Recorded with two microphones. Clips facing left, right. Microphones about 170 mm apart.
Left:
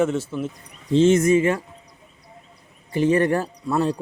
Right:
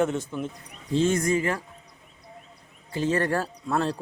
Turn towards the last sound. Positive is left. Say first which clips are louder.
# left 4 dB
turn(degrees=10)  # may be behind; listen again after turning